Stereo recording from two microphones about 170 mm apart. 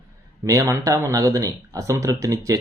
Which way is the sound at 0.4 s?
20° right (ahead or behind).